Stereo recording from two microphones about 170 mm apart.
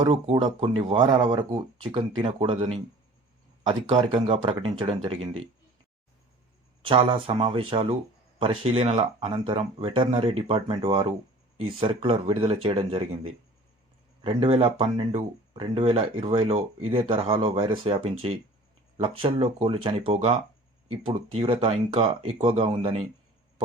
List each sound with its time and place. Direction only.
0.0 s speech: 35° right (ahead or behind)
6.8 s speech: 30° right (ahead or behind)
14.3 s speech: 30° right (ahead or behind)